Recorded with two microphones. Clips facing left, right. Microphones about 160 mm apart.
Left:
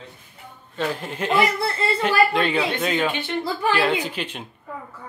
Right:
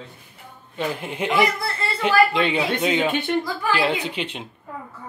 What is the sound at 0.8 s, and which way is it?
Speech, 10° right (ahead or behind).